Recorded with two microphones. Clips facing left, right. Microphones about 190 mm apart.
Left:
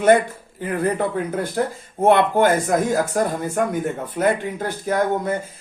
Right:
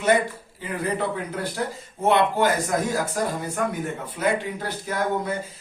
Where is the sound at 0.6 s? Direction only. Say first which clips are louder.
Left 5 dB; 50° left (ahead or behind).